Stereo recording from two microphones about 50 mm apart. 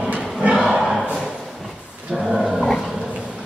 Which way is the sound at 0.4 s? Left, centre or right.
Centre.